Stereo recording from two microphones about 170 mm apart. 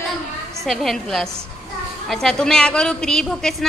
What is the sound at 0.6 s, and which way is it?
A woman's voice, centre (ahead or behind).